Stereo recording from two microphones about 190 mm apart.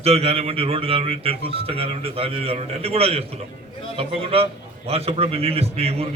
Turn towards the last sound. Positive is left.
turn(degrees=-30)  # may be behind; listen again after turning